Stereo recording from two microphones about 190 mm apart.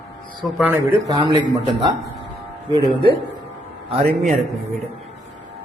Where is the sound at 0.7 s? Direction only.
20° right (ahead or behind).